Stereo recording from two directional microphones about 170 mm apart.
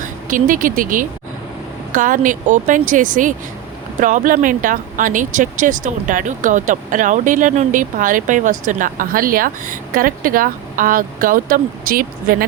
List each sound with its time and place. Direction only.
0.0 s speech: 50° right (ahead or behind)